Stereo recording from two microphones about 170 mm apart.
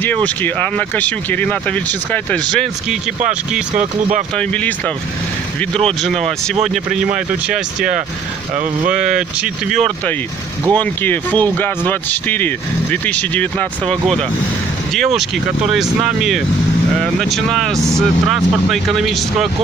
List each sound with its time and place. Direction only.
0.0 s speech: 10° left (ahead or behind)
4.4 s speech: 10° left (ahead or behind)
6.7 s speech: 5° right (ahead or behind)
8.5 s speech: 45° right (ahead or behind)
9.4 s speech: centre (ahead or behind)